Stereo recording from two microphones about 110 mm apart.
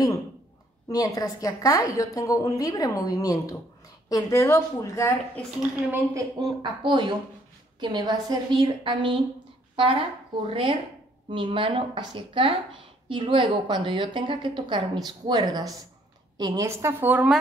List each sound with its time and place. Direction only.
0.8 s a woman's voice: 35° left (ahead or behind)
5.6 s a woman's voice: 15° right (ahead or behind)
6.6 s a woman's voice: 45° right (ahead or behind)
15.0 s a woman's voice: 40° right (ahead or behind)
16.6 s a woman's voice: 25° right (ahead or behind)
17.1 s a woman's voice: 15° right (ahead or behind)